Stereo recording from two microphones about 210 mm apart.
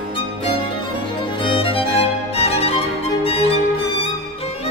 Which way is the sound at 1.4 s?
25° left (ahead or behind).